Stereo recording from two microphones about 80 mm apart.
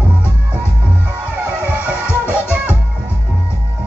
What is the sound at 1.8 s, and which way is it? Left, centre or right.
Music, centre.